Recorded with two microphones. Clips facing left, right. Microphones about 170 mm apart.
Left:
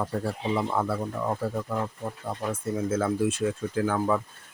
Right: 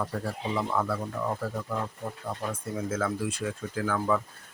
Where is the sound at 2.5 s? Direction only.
25° left (ahead or behind).